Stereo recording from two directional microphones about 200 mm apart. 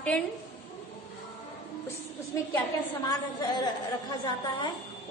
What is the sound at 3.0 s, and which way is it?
Speech, 20° left (ahead or behind).